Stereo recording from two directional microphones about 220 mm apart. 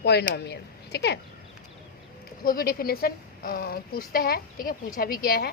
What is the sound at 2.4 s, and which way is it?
Speech, 40° left (ahead or behind).